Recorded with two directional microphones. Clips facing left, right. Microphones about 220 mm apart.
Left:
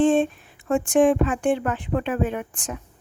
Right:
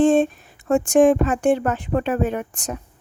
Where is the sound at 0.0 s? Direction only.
45° right (ahead or behind).